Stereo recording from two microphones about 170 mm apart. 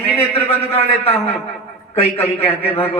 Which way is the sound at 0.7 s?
35° left (ahead or behind).